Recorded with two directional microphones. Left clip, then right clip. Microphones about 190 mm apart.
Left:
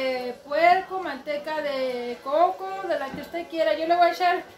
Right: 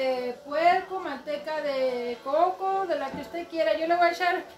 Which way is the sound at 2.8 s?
5° right (ahead or behind).